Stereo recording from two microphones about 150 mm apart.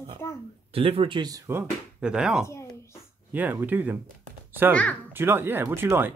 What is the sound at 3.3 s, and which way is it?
Speech, 10° right (ahead or behind).